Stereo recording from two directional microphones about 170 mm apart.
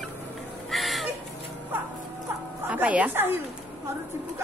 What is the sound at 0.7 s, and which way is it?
Crow, centre (ahead or behind).